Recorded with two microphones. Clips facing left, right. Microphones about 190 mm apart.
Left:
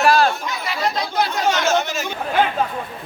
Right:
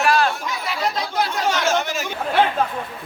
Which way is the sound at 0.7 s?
5° right (ahead or behind).